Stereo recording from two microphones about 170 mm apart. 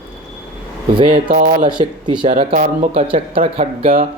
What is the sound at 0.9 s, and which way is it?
Speech, 30° right (ahead or behind).